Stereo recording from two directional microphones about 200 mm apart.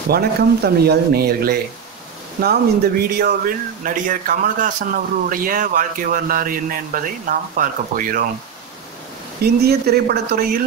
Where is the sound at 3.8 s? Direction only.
40° right (ahead or behind).